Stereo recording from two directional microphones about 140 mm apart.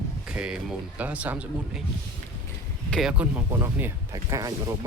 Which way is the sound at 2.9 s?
5° right (ahead or behind).